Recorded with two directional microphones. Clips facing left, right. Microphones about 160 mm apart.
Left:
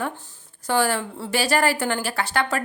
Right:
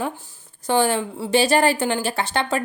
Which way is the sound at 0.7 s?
20° right (ahead or behind).